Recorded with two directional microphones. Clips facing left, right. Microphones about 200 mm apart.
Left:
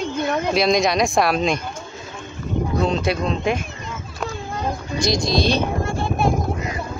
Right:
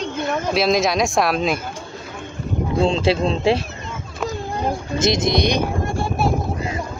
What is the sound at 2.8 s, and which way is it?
Speech, 25° right (ahead or behind).